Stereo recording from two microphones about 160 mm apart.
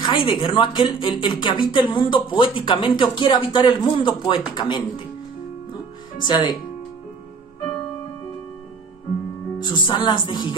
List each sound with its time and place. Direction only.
0.0 s speech: 30° left (ahead or behind)
6.2 s speech: 25° left (ahead or behind)
9.6 s speech: 25° left (ahead or behind)